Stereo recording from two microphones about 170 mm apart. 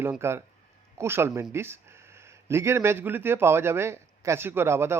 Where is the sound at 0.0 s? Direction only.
15° right (ahead or behind).